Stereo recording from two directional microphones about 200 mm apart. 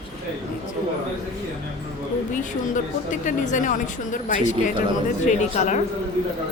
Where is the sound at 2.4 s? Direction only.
40° left (ahead or behind).